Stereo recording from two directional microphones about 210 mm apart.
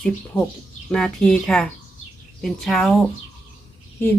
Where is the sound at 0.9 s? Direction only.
5° left (ahead or behind).